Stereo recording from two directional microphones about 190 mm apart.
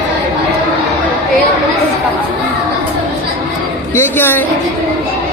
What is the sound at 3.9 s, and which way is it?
Speech, 10° left (ahead or behind).